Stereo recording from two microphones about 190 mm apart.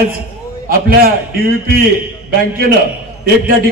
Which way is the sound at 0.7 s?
50° right (ahead or behind).